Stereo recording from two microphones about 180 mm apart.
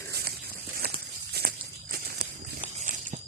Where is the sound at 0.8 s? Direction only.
60° right (ahead or behind).